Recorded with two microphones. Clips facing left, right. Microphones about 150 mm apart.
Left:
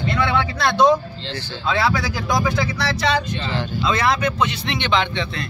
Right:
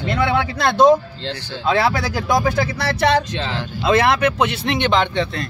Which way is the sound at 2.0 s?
55° right (ahead or behind).